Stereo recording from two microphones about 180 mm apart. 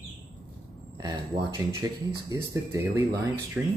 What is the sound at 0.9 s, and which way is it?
Speech, 20° right (ahead or behind).